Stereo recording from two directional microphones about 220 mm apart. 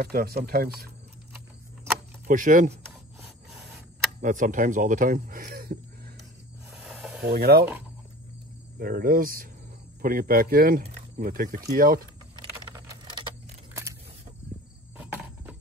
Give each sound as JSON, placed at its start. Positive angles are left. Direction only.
{"t": 0.0, "sound": "speech", "side_deg": -45}
{"t": 2.2, "sound": "speech", "side_deg": -35}
{"t": 4.2, "sound": "speech", "side_deg": -35}
{"t": 6.7, "sound": "snake", "side_deg": 0}
{"t": 7.2, "sound": "speech", "side_deg": -45}
{"t": 8.7, "sound": "speech", "side_deg": -40}
{"t": 12.4, "sound": "a sound", "side_deg": -20}
{"t": 15.0, "sound": "cricket", "side_deg": -5}